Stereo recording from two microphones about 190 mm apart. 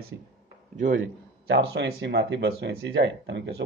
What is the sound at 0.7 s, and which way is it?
Speech, 45° right (ahead or behind).